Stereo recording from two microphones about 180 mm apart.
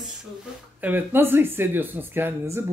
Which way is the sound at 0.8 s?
10° right (ahead or behind).